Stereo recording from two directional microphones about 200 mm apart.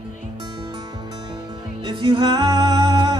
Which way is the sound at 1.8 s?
25° right (ahead or behind).